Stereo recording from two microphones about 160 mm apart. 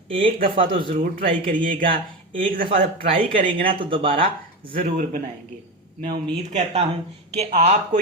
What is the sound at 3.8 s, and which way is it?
Speech, 35° right (ahead or behind).